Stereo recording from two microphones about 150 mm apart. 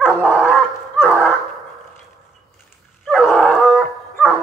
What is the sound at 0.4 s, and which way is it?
Goose, centre (ahead or behind).